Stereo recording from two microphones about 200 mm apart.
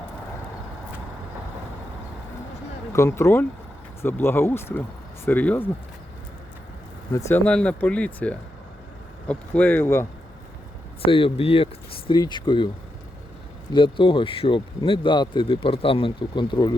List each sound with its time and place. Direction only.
2.9 s speech: 15° left (ahead or behind)
7.1 s speech: 15° left (ahead or behind)
11.1 s speech: 30° left (ahead or behind)
13.7 s speech: 25° left (ahead or behind)